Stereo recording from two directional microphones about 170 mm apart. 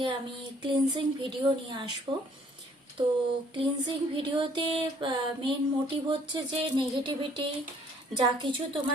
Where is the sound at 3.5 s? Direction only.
25° right (ahead or behind).